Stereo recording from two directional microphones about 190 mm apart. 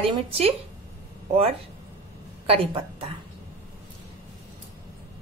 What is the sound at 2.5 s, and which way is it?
Speech, 30° right (ahead or behind).